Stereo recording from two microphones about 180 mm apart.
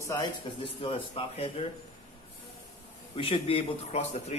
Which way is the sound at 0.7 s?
30° left (ahead or behind).